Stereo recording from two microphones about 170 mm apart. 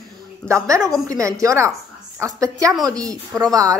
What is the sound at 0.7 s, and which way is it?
Speech, 20° right (ahead or behind).